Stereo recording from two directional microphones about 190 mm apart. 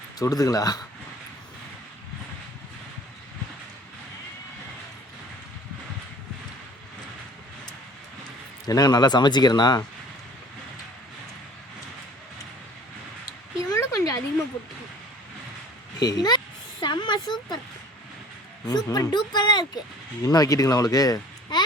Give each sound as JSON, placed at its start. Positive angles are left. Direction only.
{"t": 0.2, "sound": "a man's voice", "side_deg": 20}
{"t": 8.6, "sound": "a man's voice", "side_deg": 20}
{"t": 13.7, "sound": "a sound", "side_deg": 20}
{"t": 16.0, "sound": "speech", "side_deg": 20}
{"t": 16.8, "sound": "a sound", "side_deg": 25}
{"t": 18.6, "sound": "a man's voice", "side_deg": 20}